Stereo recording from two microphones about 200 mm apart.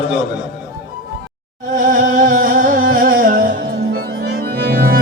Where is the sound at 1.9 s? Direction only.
40° right (ahead or behind).